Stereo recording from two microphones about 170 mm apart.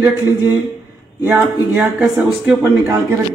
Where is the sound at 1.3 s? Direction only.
10° right (ahead or behind).